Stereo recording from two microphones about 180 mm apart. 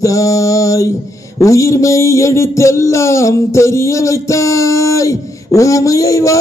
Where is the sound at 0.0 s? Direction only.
20° left (ahead or behind).